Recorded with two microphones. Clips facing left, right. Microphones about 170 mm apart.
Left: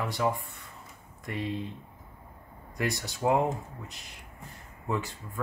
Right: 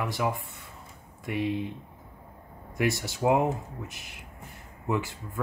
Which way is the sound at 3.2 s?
5° right (ahead or behind).